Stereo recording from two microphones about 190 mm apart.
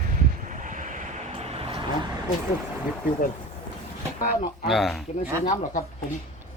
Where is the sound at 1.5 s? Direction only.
30° right (ahead or behind).